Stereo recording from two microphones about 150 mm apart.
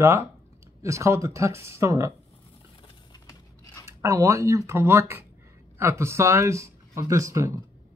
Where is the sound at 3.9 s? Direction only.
20° right (ahead or behind).